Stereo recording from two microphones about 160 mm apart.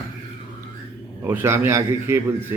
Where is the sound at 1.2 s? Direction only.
15° right (ahead or behind).